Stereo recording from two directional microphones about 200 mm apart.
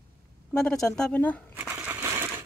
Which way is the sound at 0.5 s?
5° left (ahead or behind).